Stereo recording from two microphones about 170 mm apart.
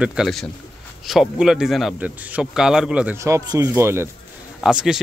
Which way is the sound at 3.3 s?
15° right (ahead or behind).